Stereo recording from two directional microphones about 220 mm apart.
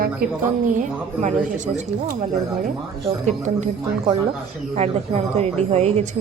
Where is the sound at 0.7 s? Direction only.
35° right (ahead or behind).